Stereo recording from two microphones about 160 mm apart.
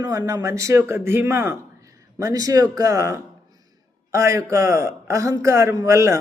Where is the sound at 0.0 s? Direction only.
20° right (ahead or behind).